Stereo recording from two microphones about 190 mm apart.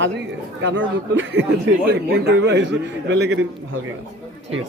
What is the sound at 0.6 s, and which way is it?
Speech, 75° right (ahead or behind).